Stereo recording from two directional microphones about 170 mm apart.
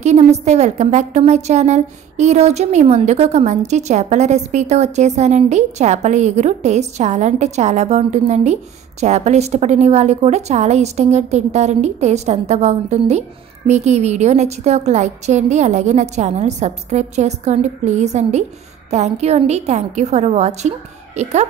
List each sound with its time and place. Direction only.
0.0 s a woman's voice: 40° right (ahead or behind)